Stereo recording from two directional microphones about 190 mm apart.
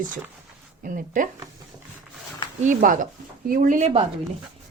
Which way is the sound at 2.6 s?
45° right (ahead or behind).